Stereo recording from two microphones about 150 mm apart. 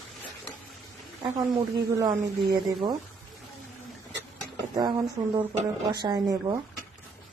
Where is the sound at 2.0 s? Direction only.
20° right (ahead or behind).